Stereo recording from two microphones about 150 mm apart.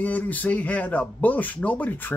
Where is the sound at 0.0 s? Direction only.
10° left (ahead or behind).